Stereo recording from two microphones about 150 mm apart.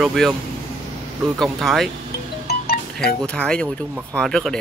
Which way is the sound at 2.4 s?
90° left.